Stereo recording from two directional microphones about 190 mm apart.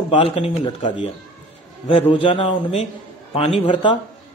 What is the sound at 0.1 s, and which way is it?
A man's voice, 30° left (ahead or behind).